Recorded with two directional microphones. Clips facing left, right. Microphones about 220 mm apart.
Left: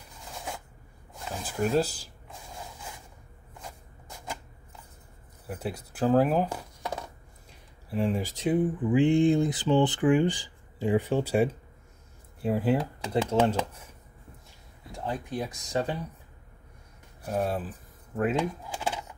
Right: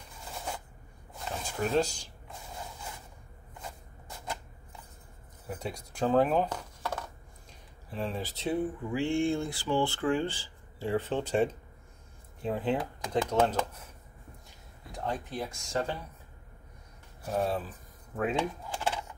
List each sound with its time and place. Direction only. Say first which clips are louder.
1.3 s speech: left 3 dB; 5° left (ahead or behind)
5.5 s speech: left 3 dB; 5° left (ahead or behind)
14.9 s speech: left 2 dB; 5° left (ahead or behind)
17.3 s speech: left 1 dB; 5° left (ahead or behind)
18.1 s a sound: left 3 dB; 5° left (ahead or behind)